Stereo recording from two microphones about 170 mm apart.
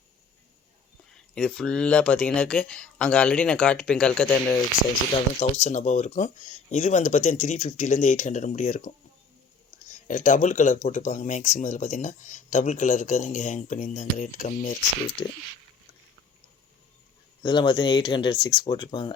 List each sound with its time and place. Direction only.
1.1 s speech: 5° left (ahead or behind)
5.4 s speech: 40° left (ahead or behind)
10.1 s speech: 50° left (ahead or behind)
15.2 s speech: 25° left (ahead or behind)
17.4 s speech: 25° left (ahead or behind)